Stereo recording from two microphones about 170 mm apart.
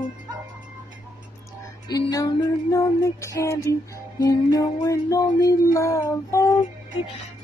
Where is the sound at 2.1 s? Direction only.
20° left (ahead or behind).